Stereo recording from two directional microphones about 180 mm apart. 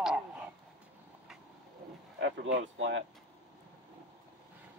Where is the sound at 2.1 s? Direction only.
80° right.